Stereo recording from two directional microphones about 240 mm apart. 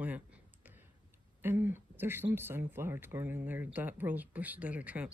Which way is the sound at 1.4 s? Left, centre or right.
Centre.